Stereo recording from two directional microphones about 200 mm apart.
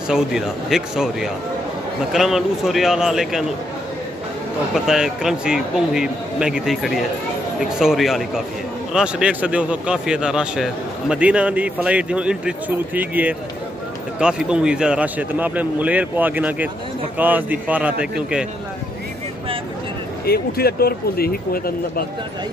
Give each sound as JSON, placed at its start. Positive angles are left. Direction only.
{"t": 0.1, "sound": "speech", "side_deg": 0}
{"t": 4.7, "sound": "a man's voice", "side_deg": 0}
{"t": 20.2, "sound": "speech", "side_deg": 50}